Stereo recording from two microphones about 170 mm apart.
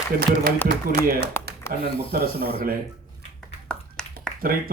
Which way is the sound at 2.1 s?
65° right (ahead or behind).